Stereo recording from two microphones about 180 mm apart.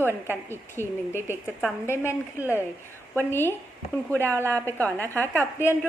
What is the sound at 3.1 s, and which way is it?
Speech, 10° left (ahead or behind).